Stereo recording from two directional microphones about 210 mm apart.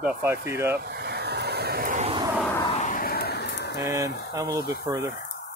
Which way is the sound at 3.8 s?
15° right (ahead or behind).